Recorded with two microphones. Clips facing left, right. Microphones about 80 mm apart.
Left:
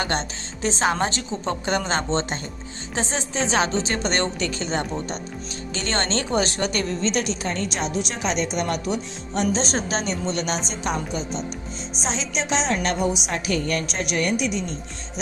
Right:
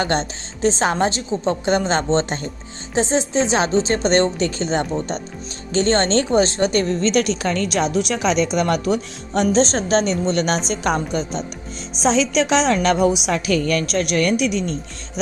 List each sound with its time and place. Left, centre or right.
0.0 s a woman's voice: right
7.0 s a woman's voice: right
9.7 s a woman's voice: right
12.0 s a woman's voice: right
13.9 s speech: right